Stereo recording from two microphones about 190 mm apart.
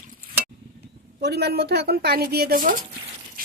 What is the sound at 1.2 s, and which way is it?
Speech, 60° right (ahead or behind).